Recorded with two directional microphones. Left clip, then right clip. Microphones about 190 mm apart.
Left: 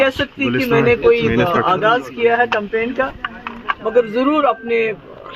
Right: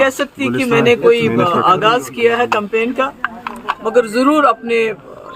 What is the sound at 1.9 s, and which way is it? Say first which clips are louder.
Speech: right 1 dB; 35° right (ahead or behind).